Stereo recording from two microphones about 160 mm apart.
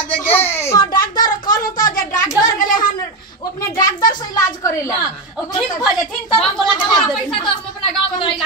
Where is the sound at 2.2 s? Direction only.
20° left (ahead or behind).